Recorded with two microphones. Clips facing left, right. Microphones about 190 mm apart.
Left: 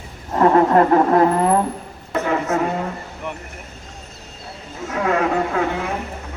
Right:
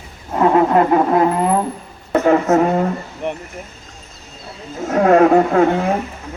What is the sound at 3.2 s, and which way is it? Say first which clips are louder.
Speech: right 7 dB; 25° right (ahead or behind).